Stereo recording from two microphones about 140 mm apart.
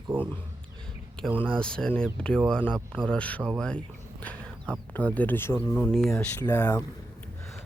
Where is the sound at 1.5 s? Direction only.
5° left (ahead or behind).